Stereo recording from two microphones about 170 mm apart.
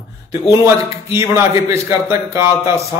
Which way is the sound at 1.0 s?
15° right (ahead or behind).